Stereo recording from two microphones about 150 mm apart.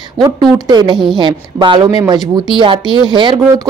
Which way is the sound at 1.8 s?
20° right (ahead or behind).